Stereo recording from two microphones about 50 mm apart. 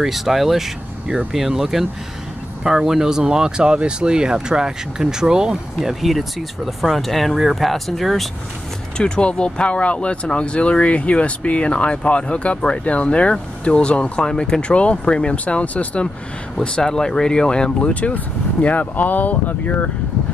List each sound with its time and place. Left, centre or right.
0.0 s speech: centre
8.9 s speech: centre
16.6 s speech: centre; by 19.9 s left